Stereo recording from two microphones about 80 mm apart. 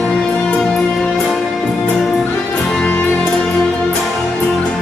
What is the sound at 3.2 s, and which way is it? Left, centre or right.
Music, centre.